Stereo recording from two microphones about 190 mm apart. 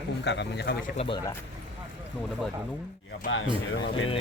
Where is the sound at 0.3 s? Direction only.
65° left (ahead or behind).